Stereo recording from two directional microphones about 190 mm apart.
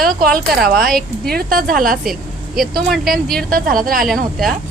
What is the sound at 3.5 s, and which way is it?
Speech, 50° right (ahead or behind).